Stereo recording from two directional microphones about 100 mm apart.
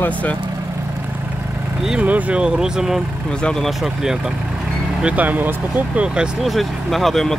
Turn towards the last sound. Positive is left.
turn(degrees=0)  # may be behind; listen again after turning